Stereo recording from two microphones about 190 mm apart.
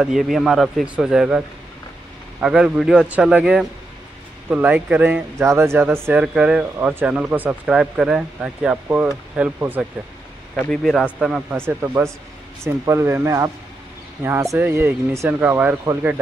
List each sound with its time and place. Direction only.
0.0 s speech: centre (ahead or behind)
2.4 s speech: 5° right (ahead or behind)
10.5 s speech: 5° left (ahead or behind); by 16.2 s 15° right (ahead or behind)